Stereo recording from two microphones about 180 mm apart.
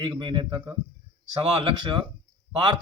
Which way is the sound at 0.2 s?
30° right (ahead or behind).